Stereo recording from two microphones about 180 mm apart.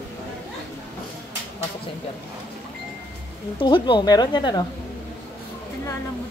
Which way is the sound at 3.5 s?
25° left (ahead or behind).